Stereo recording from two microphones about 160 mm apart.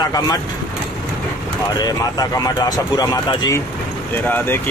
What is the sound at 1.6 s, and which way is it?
Speech, 25° left (ahead or behind).